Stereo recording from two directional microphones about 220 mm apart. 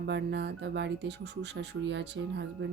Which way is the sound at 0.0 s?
55° right (ahead or behind).